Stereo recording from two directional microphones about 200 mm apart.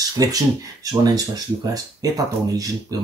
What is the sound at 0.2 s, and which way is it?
Speech, 15° right (ahead or behind).